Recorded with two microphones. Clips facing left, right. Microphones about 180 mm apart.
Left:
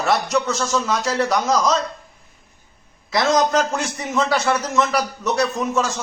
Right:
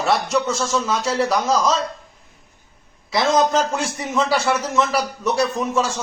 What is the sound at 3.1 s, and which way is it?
Speech, 25° right (ahead or behind).